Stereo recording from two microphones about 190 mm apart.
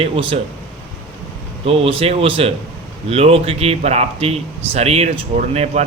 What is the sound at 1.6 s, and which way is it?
Speech, 30° right (ahead or behind).